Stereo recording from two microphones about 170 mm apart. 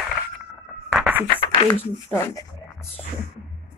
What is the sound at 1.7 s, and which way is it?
Speech, 10° left (ahead or behind).